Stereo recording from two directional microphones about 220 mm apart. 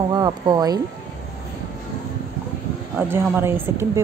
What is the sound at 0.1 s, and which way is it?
Speech, 20° right (ahead or behind).